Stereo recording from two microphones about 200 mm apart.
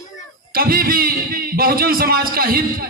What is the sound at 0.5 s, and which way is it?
A man's voice, 50° right (ahead or behind).